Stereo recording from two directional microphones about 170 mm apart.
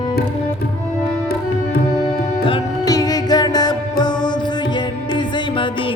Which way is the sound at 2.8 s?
20° left (ahead or behind).